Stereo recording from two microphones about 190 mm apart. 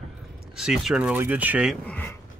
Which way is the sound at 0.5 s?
5° right (ahead or behind).